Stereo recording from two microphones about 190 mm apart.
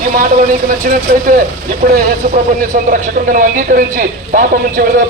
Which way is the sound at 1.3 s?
45° right (ahead or behind).